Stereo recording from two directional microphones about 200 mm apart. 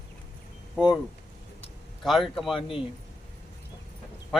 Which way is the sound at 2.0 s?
Centre (ahead or behind).